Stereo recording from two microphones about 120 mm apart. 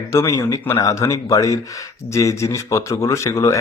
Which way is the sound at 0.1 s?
25° left (ahead or behind).